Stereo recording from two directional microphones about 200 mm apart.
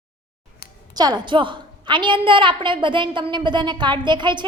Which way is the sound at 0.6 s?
50° left (ahead or behind).